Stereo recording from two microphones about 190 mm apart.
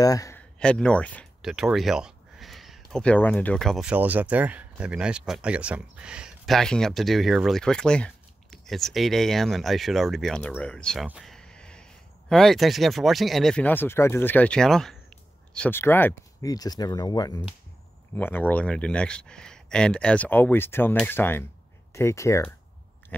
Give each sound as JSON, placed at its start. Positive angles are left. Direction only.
{"t": 0.0, "sound": "speech", "side_deg": 20}
{"t": 0.6, "sound": "speech", "side_deg": 5}
{"t": 18.1, "sound": "speech", "side_deg": 10}